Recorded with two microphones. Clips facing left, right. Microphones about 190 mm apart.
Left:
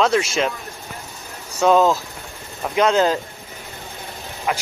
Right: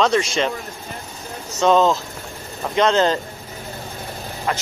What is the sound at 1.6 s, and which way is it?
Speech, 5° left (ahead or behind).